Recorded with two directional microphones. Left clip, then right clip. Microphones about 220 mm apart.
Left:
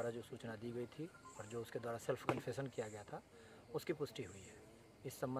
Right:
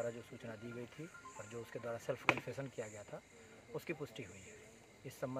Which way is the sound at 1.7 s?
20° left (ahead or behind).